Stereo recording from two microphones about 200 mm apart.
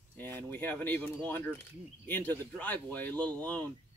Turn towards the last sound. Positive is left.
turn(degrees=5)  # may be behind; listen again after turning